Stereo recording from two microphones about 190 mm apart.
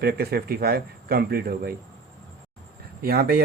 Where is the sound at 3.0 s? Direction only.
55° right (ahead or behind).